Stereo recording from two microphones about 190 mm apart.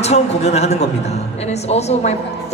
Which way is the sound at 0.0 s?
35° left (ahead or behind).